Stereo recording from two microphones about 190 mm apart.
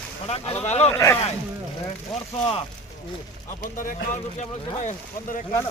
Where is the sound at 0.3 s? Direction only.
30° left (ahead or behind).